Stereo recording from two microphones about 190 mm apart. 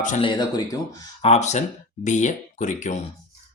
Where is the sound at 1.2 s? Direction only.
35° left (ahead or behind).